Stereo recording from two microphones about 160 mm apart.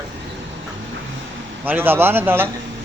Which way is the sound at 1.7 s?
15° right (ahead or behind).